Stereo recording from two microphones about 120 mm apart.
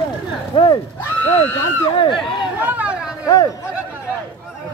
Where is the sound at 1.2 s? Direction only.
15° left (ahead or behind).